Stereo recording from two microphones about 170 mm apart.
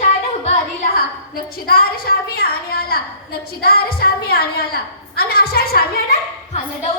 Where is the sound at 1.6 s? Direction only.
60° left (ahead or behind).